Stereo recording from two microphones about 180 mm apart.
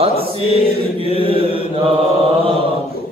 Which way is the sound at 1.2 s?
30° right (ahead or behind).